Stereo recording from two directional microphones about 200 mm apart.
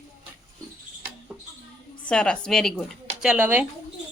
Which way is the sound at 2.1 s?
5° left (ahead or behind).